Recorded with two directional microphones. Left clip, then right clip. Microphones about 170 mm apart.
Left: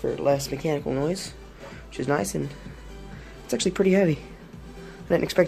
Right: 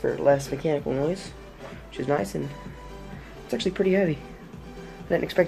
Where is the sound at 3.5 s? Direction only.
30° left (ahead or behind).